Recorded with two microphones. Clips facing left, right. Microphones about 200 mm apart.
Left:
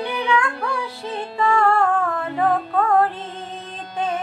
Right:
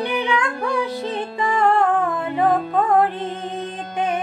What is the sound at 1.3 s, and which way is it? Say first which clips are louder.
Music: left 1 dB; 15° right (ahead or behind).